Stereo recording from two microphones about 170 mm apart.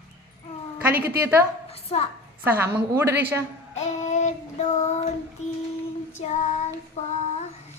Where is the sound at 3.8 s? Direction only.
40° left (ahead or behind).